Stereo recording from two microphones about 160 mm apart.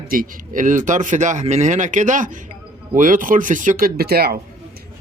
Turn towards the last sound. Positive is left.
turn(degrees=-75)  # may be behind; listen again after turning